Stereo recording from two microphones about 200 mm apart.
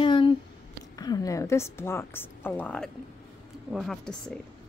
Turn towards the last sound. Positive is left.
turn(degrees=0)  # may be behind; listen again after turning